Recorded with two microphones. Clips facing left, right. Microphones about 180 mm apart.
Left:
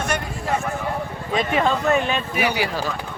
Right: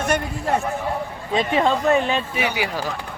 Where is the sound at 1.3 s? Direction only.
25° right (ahead or behind).